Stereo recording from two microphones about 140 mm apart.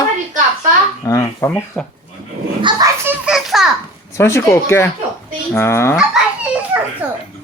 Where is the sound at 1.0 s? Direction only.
20° left (ahead or behind).